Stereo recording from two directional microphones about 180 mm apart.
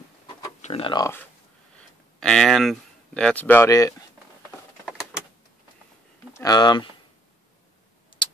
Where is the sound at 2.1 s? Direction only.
5° left (ahead or behind).